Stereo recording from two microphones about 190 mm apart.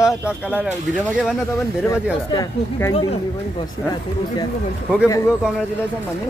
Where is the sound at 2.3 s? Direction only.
20° left (ahead or behind).